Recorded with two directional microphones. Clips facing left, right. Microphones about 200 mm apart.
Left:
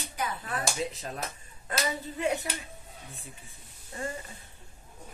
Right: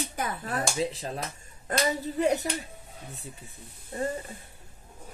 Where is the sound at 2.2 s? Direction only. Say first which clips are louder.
Right 4 dB; 40° right (ahead or behind).